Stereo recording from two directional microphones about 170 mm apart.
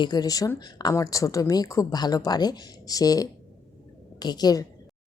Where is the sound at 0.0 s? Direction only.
25° left (ahead or behind).